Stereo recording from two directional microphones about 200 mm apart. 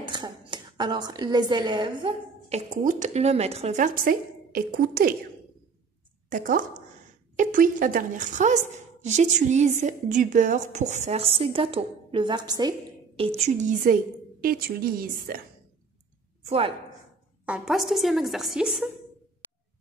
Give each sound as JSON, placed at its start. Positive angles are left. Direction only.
{"t": 0.0, "sound": "a woman's voice", "side_deg": -25}
{"t": 6.2, "sound": "a woman's voice", "side_deg": -40}
{"t": 16.4, "sound": "a woman's voice", "side_deg": -30}
{"t": 17.5, "sound": "a woman's voice", "side_deg": 0}